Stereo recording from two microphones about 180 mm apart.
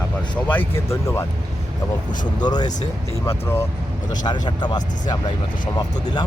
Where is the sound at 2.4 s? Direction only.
25° left (ahead or behind).